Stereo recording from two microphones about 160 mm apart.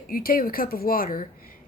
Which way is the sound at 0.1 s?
65° left (ahead or behind).